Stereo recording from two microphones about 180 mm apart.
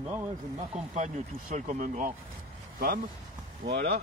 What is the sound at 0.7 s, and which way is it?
Speech, 40° right (ahead or behind).